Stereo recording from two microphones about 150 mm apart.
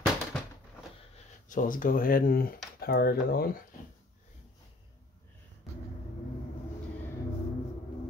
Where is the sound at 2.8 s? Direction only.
90° left.